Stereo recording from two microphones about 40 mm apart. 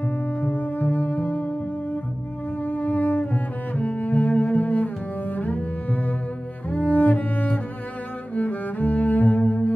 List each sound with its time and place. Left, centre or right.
0.5 s music: left
2.6 s cello: left